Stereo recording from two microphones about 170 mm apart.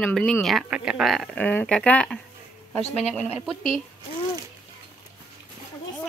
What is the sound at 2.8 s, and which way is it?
Speech, 40° left (ahead or behind).